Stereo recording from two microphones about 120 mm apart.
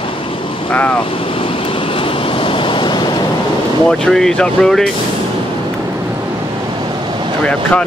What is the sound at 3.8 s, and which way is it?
Speech, 5° left (ahead or behind).